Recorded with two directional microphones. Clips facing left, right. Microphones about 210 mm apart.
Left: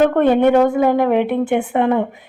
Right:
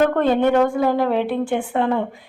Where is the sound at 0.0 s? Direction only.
15° left (ahead or behind).